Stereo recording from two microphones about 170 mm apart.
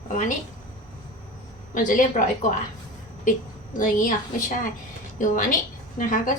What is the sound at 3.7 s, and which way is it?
A woman's voice, 50° left (ahead or behind).